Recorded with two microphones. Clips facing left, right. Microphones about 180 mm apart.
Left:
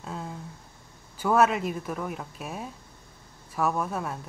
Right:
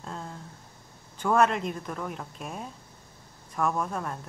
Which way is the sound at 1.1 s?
5° left (ahead or behind).